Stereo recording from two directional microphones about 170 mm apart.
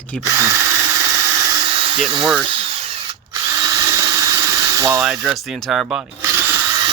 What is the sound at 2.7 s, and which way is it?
Drill, 35° right (ahead or behind).